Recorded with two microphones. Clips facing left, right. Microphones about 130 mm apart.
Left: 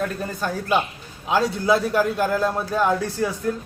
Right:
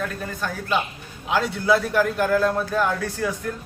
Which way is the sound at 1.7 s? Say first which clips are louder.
Even; 20° left (ahead or behind).